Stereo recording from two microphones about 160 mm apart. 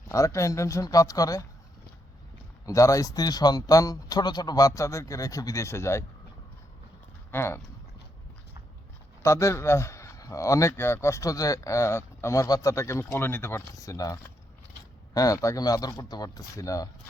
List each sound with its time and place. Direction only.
0.1 s a man's voice: 20° left (ahead or behind)
2.6 s a man's voice: 20° left (ahead or behind)
7.3 s speech: 15° left (ahead or behind)
9.2 s a man's voice: 20° left (ahead or behind)